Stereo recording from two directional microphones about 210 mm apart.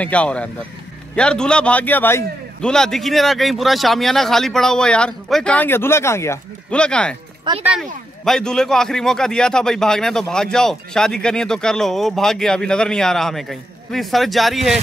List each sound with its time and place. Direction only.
0.0 s a man's voice: 5° left (ahead or behind)
7.5 s speech: 20° right (ahead or behind)
8.3 s a man's voice: 5° left (ahead or behind)